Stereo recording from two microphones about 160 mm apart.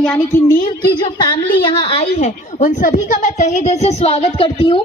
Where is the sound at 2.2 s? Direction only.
50° left (ahead or behind).